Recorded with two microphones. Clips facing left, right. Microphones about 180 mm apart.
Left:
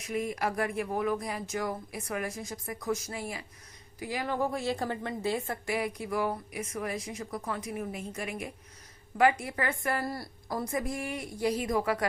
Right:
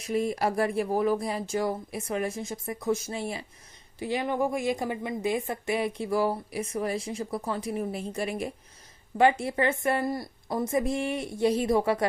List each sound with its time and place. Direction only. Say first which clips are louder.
0.0 s a woman's voice: right 5 dB; 30° right (ahead or behind)